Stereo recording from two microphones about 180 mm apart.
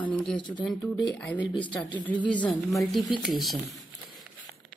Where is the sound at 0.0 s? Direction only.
5° left (ahead or behind).